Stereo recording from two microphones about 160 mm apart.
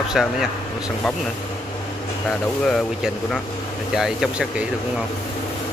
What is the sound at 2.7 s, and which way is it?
Speech, 5° left (ahead or behind).